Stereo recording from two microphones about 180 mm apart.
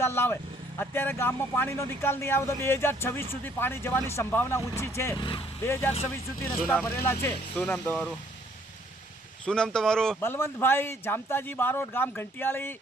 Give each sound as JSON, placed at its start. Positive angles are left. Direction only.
{"t": 0.0, "sound": "speech", "side_deg": 15}
{"t": 5.2, "sound": "speech", "side_deg": 30}
{"t": 5.6, "sound": "speech", "side_deg": 10}
{"t": 6.6, "sound": "speech", "side_deg": -5}
{"t": 7.0, "sound": "speech", "side_deg": 15}
{"t": 9.5, "sound": "speech", "side_deg": 5}